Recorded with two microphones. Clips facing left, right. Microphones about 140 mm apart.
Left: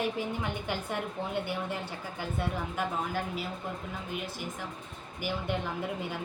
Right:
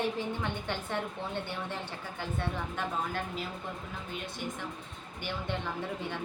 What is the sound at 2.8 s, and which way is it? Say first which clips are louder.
Speech: left 2 dB; 5° left (ahead or behind).